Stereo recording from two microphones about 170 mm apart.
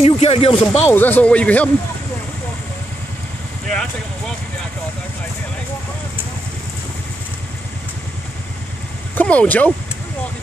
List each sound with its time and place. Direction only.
0.0 s speech: 35° left (ahead or behind)
0.7 s speech: 10° left (ahead or behind)
9.1 s speech: 10° left (ahead or behind)